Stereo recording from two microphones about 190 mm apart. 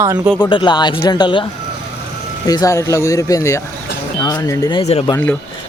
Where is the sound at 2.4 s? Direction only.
20° left (ahead or behind).